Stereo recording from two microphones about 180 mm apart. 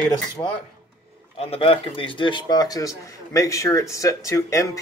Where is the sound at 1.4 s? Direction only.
30° left (ahead or behind).